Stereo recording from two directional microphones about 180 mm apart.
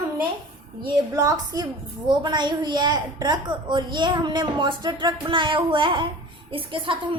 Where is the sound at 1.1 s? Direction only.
20° right (ahead or behind).